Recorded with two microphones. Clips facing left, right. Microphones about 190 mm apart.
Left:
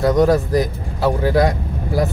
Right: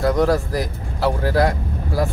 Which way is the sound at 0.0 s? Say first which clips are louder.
Left 3 dB; 20° left (ahead or behind).